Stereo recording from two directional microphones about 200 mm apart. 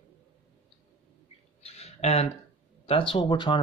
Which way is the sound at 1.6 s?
30° left (ahead or behind).